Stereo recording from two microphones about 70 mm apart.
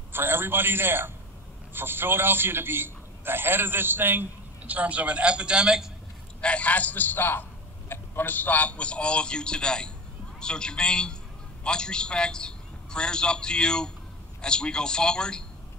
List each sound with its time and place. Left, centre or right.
0.1 s a man's voice: right; by 5.9 s centre
6.4 s a man's voice: centre